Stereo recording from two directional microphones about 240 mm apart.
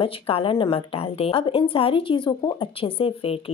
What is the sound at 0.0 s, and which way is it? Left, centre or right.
A woman's voice, left.